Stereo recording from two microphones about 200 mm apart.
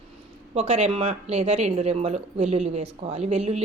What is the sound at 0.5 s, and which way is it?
Speech, 30° right (ahead or behind).